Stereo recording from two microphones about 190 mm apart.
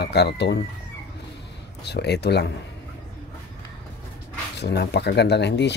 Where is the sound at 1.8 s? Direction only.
60° left (ahead or behind).